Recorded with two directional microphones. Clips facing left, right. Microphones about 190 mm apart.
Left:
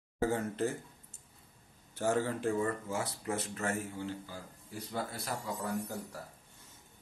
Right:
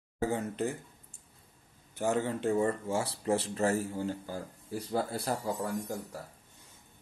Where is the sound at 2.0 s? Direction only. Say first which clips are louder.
Right 1 dB; 20° right (ahead or behind).